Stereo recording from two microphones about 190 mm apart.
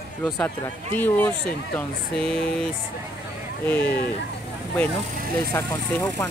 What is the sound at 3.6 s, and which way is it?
Speech, 10° left (ahead or behind).